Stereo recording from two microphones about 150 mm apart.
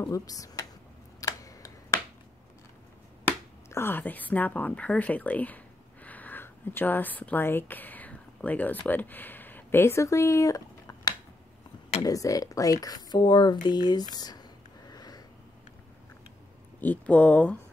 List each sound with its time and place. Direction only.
0.1 s speech: 25° left (ahead or behind)
1.2 s a sound: 20° left (ahead or behind)
3.3 s speech: 15° left (ahead or behind)
14.1 s whispering: 25° left (ahead or behind)
16.8 s speech: 10° left (ahead or behind)